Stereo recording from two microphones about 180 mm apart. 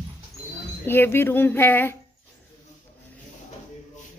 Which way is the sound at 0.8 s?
10° left (ahead or behind).